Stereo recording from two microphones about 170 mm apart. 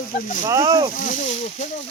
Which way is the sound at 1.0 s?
50° left (ahead or behind).